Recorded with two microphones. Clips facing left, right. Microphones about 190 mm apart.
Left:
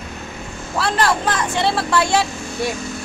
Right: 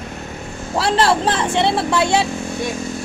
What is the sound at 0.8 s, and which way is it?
Speech, 30° right (ahead or behind).